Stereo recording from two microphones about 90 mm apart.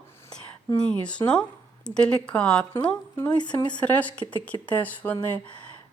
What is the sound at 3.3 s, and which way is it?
Speech, 55° left (ahead or behind).